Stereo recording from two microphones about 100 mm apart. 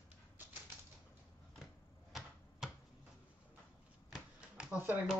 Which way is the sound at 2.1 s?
Centre (ahead or behind).